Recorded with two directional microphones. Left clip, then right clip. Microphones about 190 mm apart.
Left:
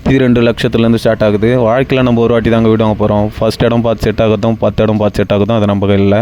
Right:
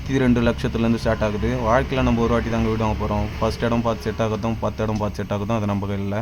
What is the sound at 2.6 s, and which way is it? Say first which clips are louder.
Speech: left 12 dB; 40° left (ahead or behind).